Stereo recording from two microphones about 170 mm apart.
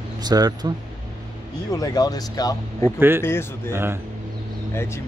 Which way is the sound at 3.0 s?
15° right (ahead or behind).